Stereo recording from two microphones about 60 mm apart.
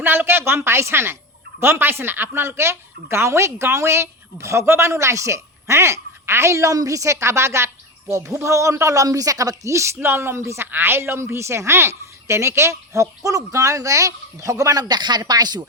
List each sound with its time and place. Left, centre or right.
0.0 s a woman's voice: right
10.0 s a woman's voice: right
10.7 s a woman's voice: right